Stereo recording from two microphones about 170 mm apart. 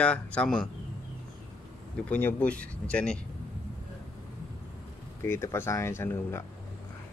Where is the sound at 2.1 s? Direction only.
10° left (ahead or behind).